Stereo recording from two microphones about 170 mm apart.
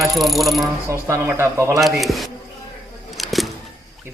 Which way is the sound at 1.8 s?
Centre (ahead or behind).